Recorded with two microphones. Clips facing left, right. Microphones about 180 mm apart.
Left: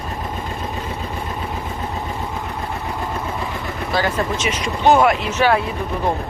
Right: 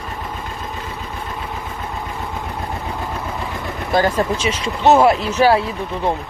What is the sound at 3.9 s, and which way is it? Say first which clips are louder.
Speech: right 4 dB; 40° right (ahead or behind).